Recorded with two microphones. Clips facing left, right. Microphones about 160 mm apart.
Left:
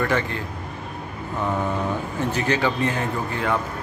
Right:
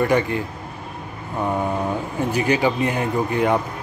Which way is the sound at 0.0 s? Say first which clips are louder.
Right 4 dB; 15° right (ahead or behind).